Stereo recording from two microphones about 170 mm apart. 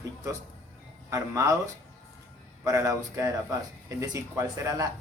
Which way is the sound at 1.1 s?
15° right (ahead or behind).